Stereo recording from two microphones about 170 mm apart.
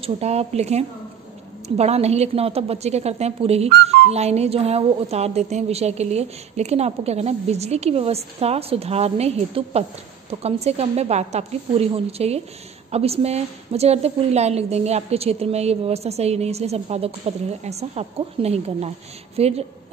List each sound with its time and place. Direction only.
0.0 s a woman's voice: 40° right (ahead or behind)